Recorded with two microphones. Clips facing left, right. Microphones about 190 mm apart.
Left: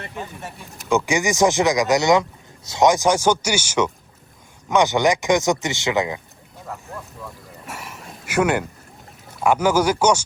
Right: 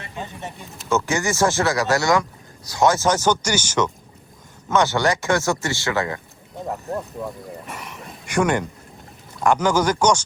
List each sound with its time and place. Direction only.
0.9 s speech: 15° left (ahead or behind)
6.9 s speech: 30° right (ahead or behind)
7.7 s a sound: 5° left (ahead or behind)
9.4 s speech: 5° left (ahead or behind)